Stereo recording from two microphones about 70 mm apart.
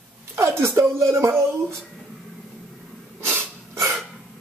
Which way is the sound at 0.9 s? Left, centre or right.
Right.